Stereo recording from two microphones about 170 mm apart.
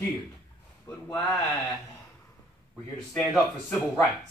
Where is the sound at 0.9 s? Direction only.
10° left (ahead or behind).